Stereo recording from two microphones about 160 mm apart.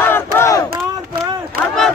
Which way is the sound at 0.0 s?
15° left (ahead or behind).